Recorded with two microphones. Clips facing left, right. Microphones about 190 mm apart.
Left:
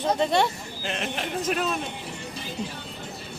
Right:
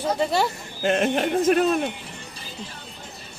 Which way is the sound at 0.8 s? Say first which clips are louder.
Right 10 dB; 50° right (ahead or behind).